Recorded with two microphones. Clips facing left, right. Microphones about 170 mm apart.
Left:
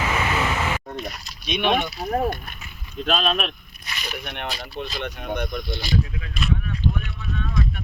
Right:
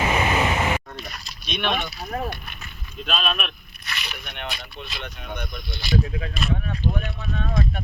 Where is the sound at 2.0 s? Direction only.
40° left (ahead or behind).